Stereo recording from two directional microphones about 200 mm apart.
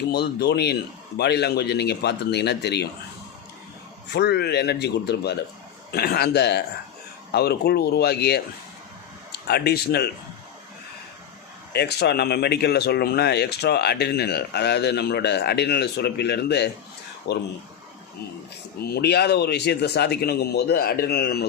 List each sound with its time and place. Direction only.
0.1 s speech: 55° left (ahead or behind)
4.1 s speech: 55° left (ahead or behind)
9.5 s speech: 55° left (ahead or behind)
11.7 s speech: 55° left (ahead or behind)
18.8 s speech: 50° left (ahead or behind)